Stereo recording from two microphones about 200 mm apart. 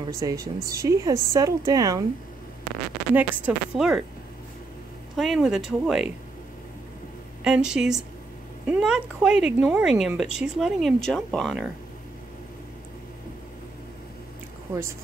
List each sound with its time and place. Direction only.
0.1 s a woman's voice: 15° right (ahead or behind)
3.2 s speech: 5° right (ahead or behind)
5.1 s speech: centre (ahead or behind)
7.4 s speech: 5° right (ahead or behind)